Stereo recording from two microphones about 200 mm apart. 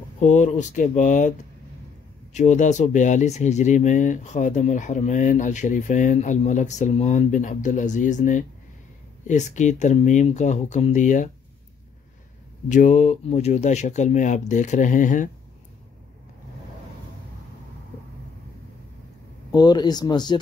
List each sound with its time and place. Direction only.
0.2 s speech: 35° left (ahead or behind)
2.3 s speech: 35° left (ahead or behind)
12.6 s speech: 40° left (ahead or behind)
19.5 s speech: 20° left (ahead or behind)